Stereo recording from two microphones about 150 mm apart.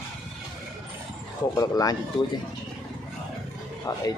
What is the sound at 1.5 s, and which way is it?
Speech, 25° left (ahead or behind).